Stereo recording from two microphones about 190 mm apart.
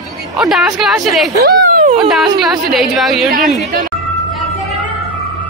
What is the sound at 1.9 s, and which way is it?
Speech, centre (ahead or behind).